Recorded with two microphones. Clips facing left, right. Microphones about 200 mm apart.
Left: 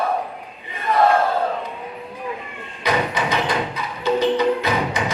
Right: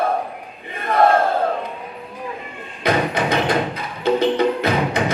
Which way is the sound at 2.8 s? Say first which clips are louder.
Right 2 dB; 55° right (ahead or behind).